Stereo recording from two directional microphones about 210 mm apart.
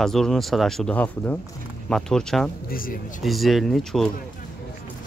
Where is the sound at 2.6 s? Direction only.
45° left (ahead or behind).